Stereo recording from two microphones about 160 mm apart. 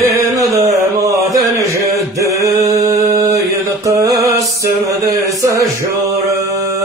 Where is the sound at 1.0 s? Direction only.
20° right (ahead or behind).